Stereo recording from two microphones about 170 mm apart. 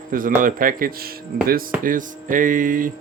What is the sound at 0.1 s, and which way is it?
Speech, 55° right (ahead or behind).